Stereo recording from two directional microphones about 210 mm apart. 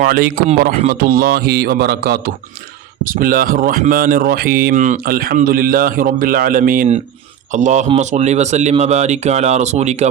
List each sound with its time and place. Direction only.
0.0 s a man's voice: 45° right (ahead or behind)